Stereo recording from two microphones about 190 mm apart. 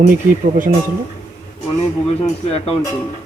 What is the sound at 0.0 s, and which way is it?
Speech, 45° right (ahead or behind).